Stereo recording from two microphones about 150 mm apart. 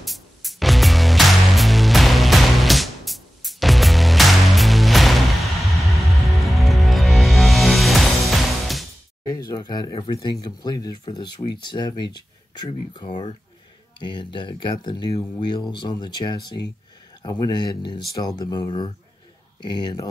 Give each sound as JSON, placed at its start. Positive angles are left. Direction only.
{"t": 0.0, "sound": "music", "side_deg": 0}
{"t": 9.2, "sound": "speech", "side_deg": 25}